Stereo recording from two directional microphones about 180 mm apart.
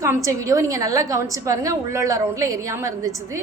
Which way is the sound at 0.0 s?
15° right (ahead or behind).